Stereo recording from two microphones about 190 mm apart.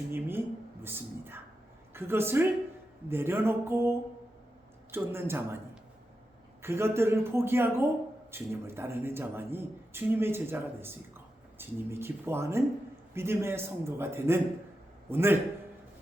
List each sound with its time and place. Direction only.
0.1 s a sound: 10° right (ahead or behind)
1.9 s a woman's voice: 10° right (ahead or behind)
6.6 s a man's voice: 15° right (ahead or behind)